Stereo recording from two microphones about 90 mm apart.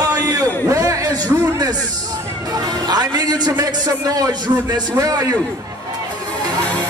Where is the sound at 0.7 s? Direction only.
40° right (ahead or behind).